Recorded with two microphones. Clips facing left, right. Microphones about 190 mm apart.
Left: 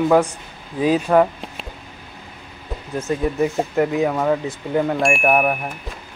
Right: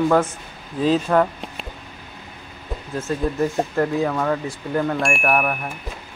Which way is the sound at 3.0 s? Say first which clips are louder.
Left 2 dB; 15° left (ahead or behind).